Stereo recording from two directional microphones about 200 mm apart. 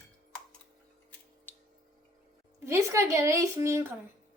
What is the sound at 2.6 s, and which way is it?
Speech, 15° right (ahead or behind).